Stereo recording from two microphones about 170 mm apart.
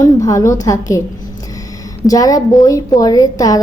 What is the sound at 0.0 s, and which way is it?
A woman's voice, 20° left (ahead or behind).